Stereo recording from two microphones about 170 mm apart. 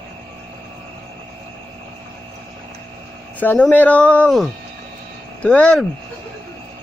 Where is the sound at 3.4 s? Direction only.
10° left (ahead or behind).